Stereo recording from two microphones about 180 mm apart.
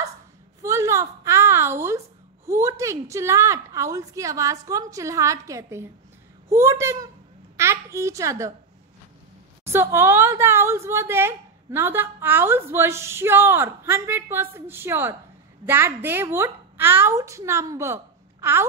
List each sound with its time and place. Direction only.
0.6 s a sound: 15° right (ahead or behind)
2.4 s a woman's voice: 15° right (ahead or behind)
9.7 s a woman's voice: 15° right (ahead or behind)